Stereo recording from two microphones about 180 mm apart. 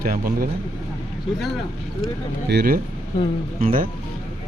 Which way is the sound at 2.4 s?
60° right (ahead or behind).